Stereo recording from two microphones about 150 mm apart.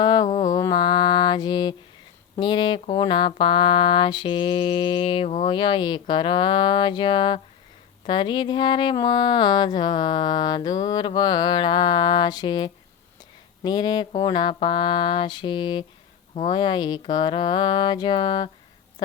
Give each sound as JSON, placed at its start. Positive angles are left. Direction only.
{"t": 0.0, "sound": "mantra", "side_deg": 30}
{"t": 5.5, "sound": "mantra", "side_deg": 30}
{"t": 8.0, "sound": "speech", "side_deg": 30}
{"t": 14.2, "sound": "mantra", "side_deg": 30}